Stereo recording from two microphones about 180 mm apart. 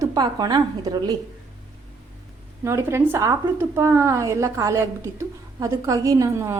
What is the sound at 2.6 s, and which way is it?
A woman's voice, 15° right (ahead or behind).